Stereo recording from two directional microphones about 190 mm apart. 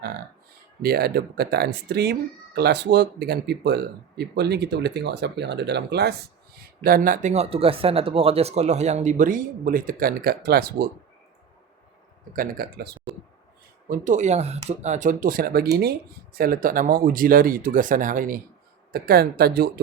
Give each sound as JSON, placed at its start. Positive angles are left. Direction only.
{"t": 0.8, "sound": "speech", "side_deg": -55}
{"t": 6.8, "sound": "speech", "side_deg": -50}
{"t": 12.4, "sound": "speech", "side_deg": -50}
{"t": 13.8, "sound": "speech", "side_deg": -45}